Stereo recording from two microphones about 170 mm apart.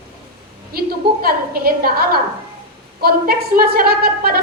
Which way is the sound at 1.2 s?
60° right (ahead or behind).